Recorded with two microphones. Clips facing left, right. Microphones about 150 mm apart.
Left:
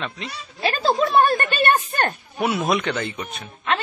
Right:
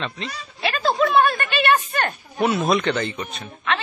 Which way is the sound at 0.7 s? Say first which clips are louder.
Even; 35° left (ahead or behind).